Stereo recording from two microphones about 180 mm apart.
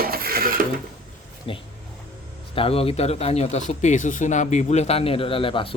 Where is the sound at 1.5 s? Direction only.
30° left (ahead or behind).